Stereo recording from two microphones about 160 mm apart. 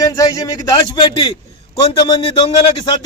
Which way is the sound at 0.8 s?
30° left (ahead or behind).